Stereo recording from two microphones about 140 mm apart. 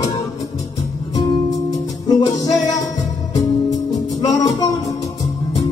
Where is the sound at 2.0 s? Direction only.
30° left (ahead or behind).